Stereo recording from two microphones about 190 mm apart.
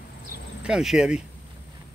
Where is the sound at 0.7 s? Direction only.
5° right (ahead or behind).